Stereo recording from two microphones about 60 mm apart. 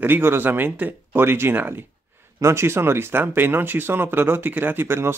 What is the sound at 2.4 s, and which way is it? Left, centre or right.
Speech, right.